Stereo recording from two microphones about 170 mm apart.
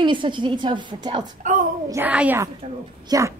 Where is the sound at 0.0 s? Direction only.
30° right (ahead or behind).